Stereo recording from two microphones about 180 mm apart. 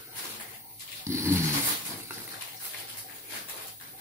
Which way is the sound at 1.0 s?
15° right (ahead or behind).